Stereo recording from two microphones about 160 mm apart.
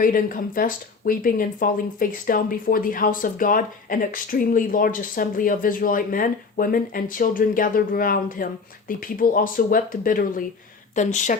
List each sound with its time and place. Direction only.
0.0 s speech: 60° left (ahead or behind)
10.9 s speech: 50° left (ahead or behind)